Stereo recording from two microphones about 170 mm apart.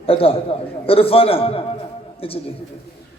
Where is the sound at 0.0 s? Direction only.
35° left (ahead or behind).